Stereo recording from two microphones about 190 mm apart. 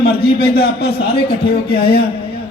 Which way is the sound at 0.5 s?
55° left (ahead or behind).